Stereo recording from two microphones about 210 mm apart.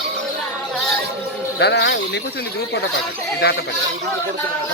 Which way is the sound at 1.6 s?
55° left (ahead or behind).